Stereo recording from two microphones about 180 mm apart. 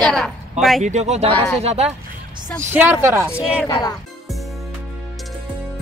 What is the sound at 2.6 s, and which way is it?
Speech, 10° right (ahead or behind).